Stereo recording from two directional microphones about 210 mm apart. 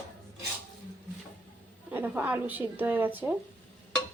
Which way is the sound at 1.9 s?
10° right (ahead or behind).